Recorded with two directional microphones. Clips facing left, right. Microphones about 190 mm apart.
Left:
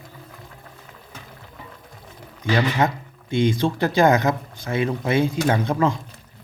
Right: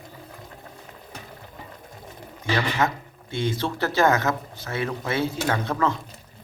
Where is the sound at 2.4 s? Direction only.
15° left (ahead or behind).